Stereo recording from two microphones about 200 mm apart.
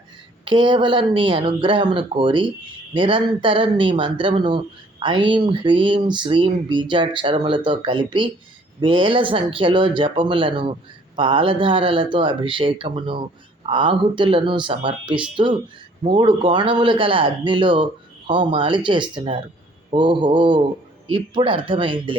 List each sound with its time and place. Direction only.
0.4 s speech: 25° right (ahead or behind)